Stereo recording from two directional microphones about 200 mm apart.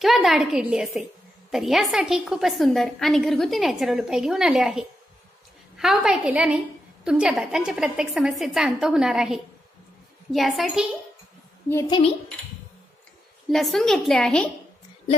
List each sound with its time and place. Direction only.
0.0 s a woman's voice: centre (ahead or behind)
11.7 s a woman's voice: 25° left (ahead or behind)
13.5 s a woman's voice: centre (ahead or behind)